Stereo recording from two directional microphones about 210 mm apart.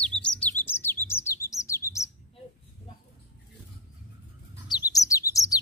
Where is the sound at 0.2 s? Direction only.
5° left (ahead or behind).